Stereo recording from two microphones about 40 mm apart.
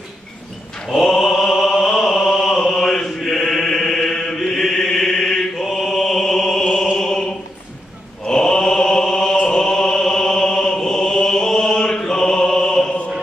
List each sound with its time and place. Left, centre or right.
0.8 s mantra: centre